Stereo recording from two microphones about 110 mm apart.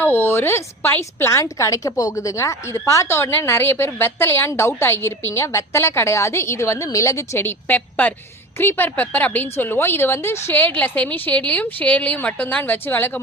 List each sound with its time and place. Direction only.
0.0 s a woman's voice: 20° left (ahead or behind)